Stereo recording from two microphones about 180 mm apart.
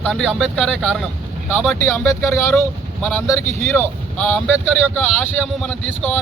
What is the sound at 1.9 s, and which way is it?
Speech, 15° left (ahead or behind).